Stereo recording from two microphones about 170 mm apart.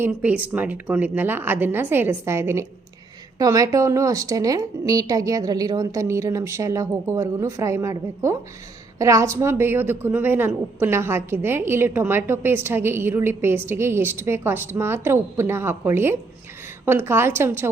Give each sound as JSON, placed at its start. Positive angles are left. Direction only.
{"t": 0.0, "sound": "a woman's voice", "side_deg": -10}